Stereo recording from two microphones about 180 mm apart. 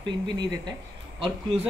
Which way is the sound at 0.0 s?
25° right (ahead or behind).